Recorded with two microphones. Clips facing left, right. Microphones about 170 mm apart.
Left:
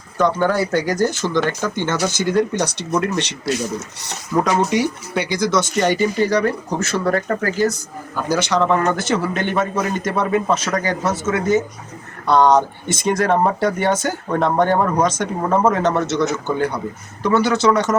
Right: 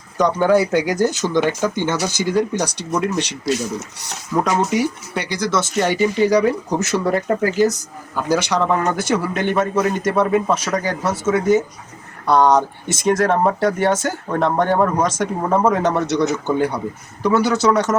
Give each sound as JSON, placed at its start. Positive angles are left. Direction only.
{"t": 0.3, "sound": "speech", "side_deg": -15}
{"t": 4.4, "sound": "a man's voice", "side_deg": 0}
{"t": 16.5, "sound": "a man's voice", "side_deg": -5}